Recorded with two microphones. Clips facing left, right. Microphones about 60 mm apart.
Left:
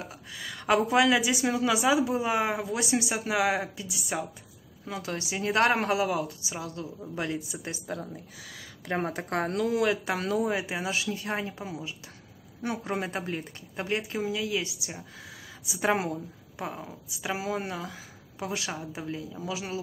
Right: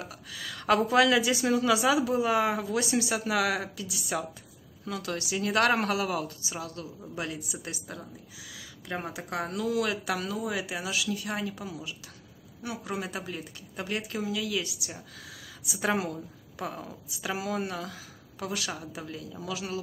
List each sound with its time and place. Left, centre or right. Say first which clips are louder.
0.0 s a woman's voice: even; left
8.5 s speech: left 4 dB; left
9.8 s a woman's voice: left 2 dB; left
10.2 s speech: left 5 dB; left
10.5 s a woman's voice: left 2 dB; left
13.7 s a woman's voice: left 3 dB; left